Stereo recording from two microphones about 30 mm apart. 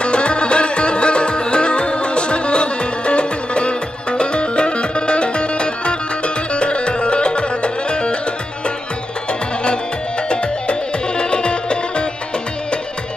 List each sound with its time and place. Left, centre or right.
0.0 s music: left
10.3 s music: left